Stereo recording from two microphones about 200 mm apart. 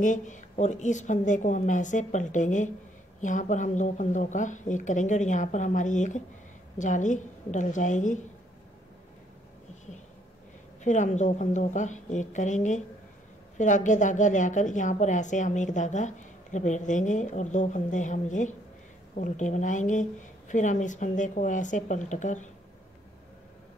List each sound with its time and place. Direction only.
0.0 s speech: 40° left (ahead or behind)
10.8 s speech: 35° left (ahead or behind)